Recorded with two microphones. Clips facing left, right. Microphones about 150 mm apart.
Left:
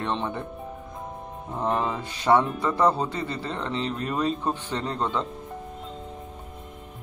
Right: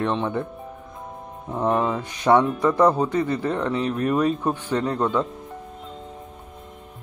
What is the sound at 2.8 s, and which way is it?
Speech, 10° right (ahead or behind).